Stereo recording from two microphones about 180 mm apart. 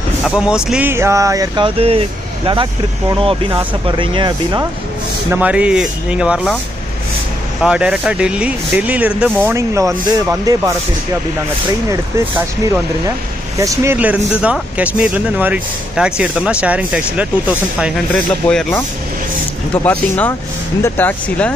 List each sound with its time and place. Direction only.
0.2 s speech: 5° right (ahead or behind)
1.8 s speech: 30° right (ahead or behind)
5.3 s speech: 5° right (ahead or behind)
7.6 s speech: 5° right (ahead or behind)
13.6 s speech: 15° right (ahead or behind); by 21.5 s 10° left (ahead or behind)